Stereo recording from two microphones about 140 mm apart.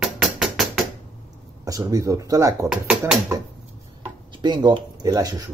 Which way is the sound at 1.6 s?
25° right (ahead or behind).